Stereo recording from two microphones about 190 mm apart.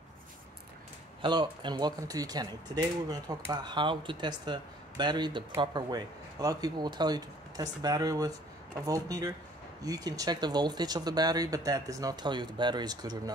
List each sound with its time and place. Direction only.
1.2 s speech: 25° right (ahead or behind)